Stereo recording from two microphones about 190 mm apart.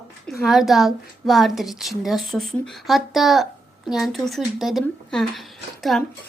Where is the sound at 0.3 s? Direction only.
Centre (ahead or behind).